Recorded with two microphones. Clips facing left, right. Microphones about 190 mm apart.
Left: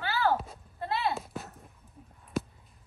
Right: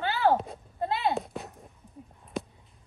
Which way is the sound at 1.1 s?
Centre (ahead or behind).